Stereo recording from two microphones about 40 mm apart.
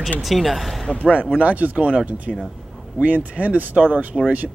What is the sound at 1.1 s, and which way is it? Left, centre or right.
Speech, right.